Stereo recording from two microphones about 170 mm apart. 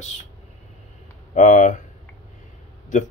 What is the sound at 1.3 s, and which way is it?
Speech, 50° left (ahead or behind).